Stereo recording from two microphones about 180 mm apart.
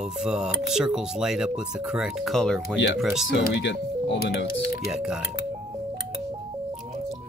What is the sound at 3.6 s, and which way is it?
Speech, 75° left (ahead or behind).